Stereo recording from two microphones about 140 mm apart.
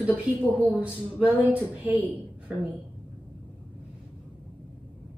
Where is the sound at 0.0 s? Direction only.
10° right (ahead or behind).